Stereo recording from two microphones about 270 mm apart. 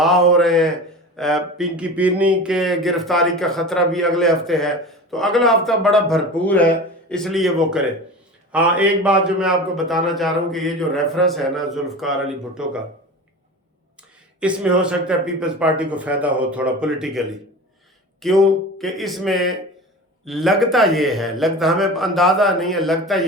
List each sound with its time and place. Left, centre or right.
0.0 s speech: centre
14.4 s speech: centre